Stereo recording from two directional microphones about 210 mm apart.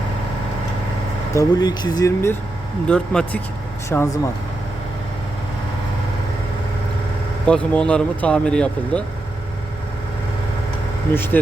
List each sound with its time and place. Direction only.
1.3 s speech: 15° left (ahead or behind)
2.8 s speech: 5° left (ahead or behind)
7.4 s speech: 5° left (ahead or behind)
11.1 s speech: 10° left (ahead or behind)